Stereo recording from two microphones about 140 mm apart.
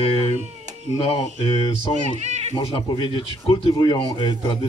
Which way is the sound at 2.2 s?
55° right (ahead or behind).